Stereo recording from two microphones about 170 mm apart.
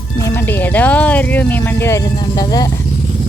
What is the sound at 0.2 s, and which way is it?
Speech, 15° left (ahead or behind).